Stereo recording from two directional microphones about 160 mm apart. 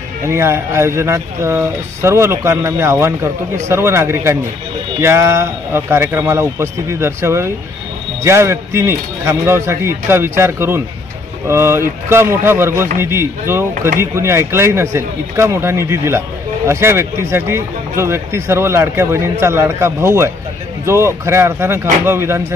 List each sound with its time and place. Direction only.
0.3 s speech: 15° right (ahead or behind)